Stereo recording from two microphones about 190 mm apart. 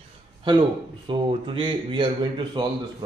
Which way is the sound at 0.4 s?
25° right (ahead or behind).